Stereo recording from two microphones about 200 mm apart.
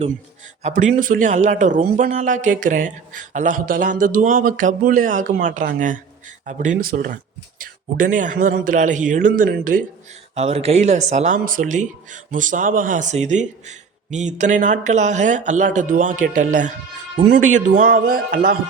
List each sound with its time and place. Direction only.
0.6 s speech: 40° right (ahead or behind)
10.3 s speech: 30° right (ahead or behind)